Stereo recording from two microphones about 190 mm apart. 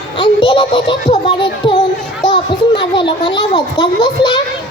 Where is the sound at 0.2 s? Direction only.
25° left (ahead or behind).